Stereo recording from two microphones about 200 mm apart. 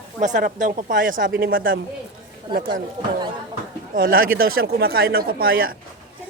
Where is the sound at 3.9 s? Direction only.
45° right (ahead or behind).